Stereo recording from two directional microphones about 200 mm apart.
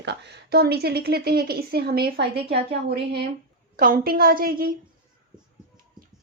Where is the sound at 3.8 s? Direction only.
45° right (ahead or behind).